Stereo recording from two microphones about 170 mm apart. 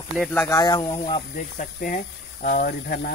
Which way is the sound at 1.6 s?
50° left (ahead or behind).